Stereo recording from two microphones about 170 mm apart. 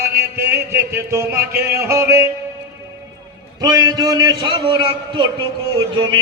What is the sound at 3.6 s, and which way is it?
A man's voice, 20° right (ahead or behind).